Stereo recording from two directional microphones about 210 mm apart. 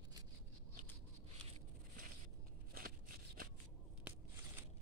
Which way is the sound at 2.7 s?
45° right (ahead or behind).